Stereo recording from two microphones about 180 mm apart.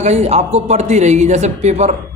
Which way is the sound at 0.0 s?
35° right (ahead or behind).